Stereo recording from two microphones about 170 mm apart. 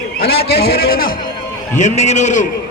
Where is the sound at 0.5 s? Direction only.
65° left (ahead or behind).